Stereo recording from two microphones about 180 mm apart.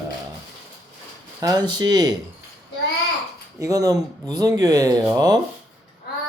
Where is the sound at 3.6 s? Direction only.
20° right (ahead or behind).